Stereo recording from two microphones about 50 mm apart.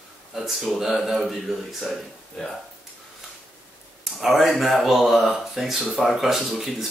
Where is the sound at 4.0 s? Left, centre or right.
Centre.